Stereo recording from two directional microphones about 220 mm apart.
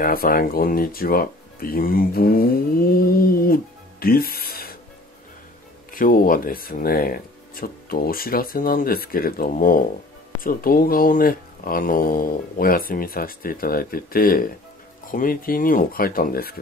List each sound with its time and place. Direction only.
0.0 s speech: 40° left (ahead or behind)
3.1 s music: 40° left (ahead or behind)
5.9 s speech: 40° left (ahead or behind)